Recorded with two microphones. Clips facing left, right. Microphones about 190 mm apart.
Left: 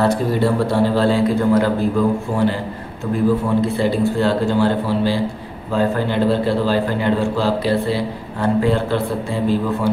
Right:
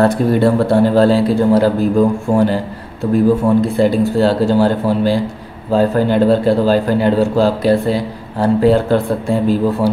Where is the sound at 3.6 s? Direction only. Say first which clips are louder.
Right 4 dB; 45° right (ahead or behind).